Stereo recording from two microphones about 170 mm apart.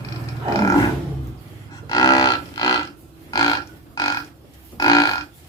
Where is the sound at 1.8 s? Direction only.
20° left (ahead or behind).